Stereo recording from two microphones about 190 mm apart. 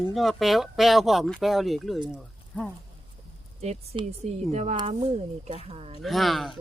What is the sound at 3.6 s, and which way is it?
Speech, 35° right (ahead or behind).